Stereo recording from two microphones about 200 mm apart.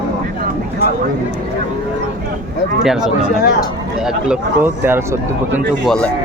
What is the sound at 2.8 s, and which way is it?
Speech, centre (ahead or behind).